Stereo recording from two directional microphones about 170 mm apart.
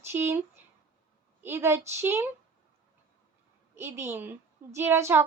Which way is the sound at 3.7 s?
15° right (ahead or behind).